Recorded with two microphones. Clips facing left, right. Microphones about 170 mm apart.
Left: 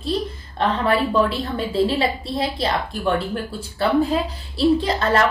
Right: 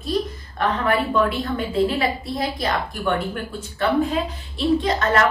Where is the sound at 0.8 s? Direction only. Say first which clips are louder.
Left 1 dB; 30° left (ahead or behind).